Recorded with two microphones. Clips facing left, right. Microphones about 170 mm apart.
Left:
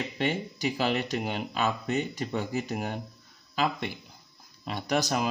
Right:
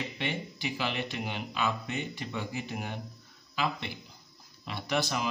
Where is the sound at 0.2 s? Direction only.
45° left (ahead or behind).